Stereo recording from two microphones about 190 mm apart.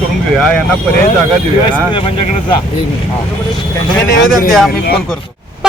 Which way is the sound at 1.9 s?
25° left (ahead or behind).